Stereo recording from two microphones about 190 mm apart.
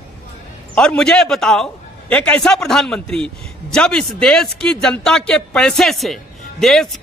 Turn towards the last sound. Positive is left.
turn(degrees=0)  # may be behind; listen again after turning